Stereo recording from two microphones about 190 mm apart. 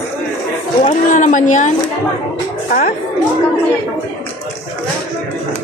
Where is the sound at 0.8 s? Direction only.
40° left (ahead or behind).